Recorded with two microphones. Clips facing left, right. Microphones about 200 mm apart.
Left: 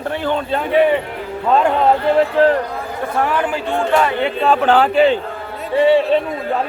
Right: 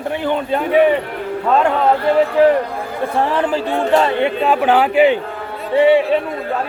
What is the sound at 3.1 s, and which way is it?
Speech, 30° right (ahead or behind).